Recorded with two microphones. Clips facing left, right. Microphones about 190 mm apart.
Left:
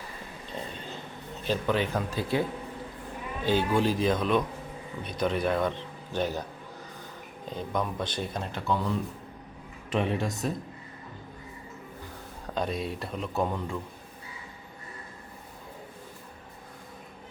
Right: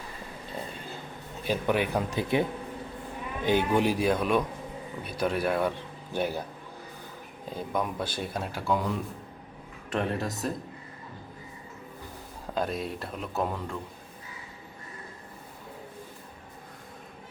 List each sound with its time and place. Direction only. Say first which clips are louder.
1.5 s a man's voice: right 1 dB; 10° right (ahead or behind)
7.5 s a man's voice: even; 5° right (ahead or behind)
9.9 s speech: left 1 dB; centre (ahead or behind)
12.5 s speech: even; centre (ahead or behind)